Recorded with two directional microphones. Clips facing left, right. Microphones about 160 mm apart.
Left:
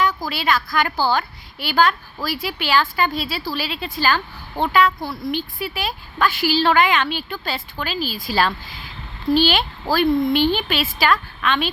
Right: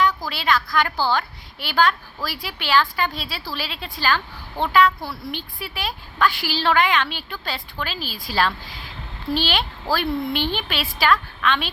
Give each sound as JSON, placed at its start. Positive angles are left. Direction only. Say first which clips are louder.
{"t": 0.2, "sound": "a woman's voice", "louder": "left 1 dB", "side_deg": 5}